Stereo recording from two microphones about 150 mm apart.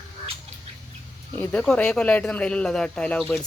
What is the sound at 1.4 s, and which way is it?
Speech, 5° left (ahead or behind).